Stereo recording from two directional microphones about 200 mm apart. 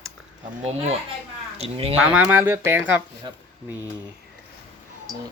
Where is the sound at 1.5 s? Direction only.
30° right (ahead or behind).